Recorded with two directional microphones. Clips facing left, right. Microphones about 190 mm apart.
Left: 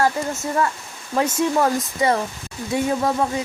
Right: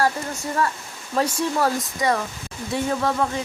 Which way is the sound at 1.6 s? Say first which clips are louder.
Left 2 dB; 25° left (ahead or behind).